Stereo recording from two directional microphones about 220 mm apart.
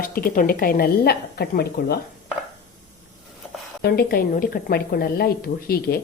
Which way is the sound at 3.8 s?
45° left (ahead or behind).